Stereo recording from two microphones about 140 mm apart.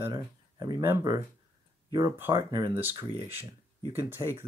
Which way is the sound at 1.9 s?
25° right (ahead or behind).